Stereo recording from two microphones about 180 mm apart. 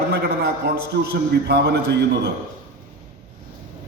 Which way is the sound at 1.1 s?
65° right (ahead or behind).